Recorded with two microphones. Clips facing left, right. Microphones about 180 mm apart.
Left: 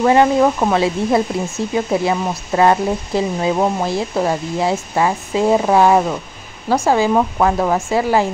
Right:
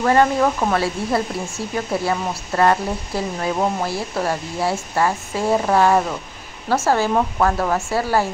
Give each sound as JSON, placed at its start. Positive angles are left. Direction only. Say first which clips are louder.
{"t": 0.0, "sound": "speech", "louder": "left 4 dB", "side_deg": 15}